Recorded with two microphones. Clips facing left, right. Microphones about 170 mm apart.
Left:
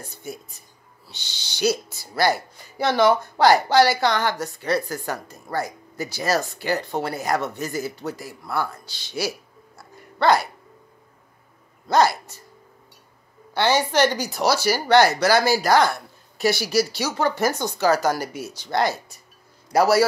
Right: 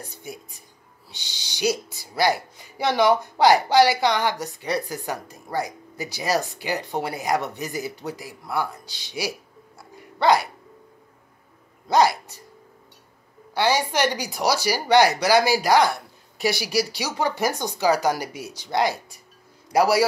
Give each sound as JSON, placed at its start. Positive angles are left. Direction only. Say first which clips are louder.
{"t": 0.0, "sound": "a woman's voice", "louder": "left 2 dB", "side_deg": -15}
{"t": 9.8, "sound": "a sound", "louder": "left 1 dB", "side_deg": -15}
{"t": 11.9, "sound": "a woman's voice", "louder": "even", "side_deg": -15}
{"t": 13.6, "sound": "a woman's voice", "louder": "left 2 dB", "side_deg": -10}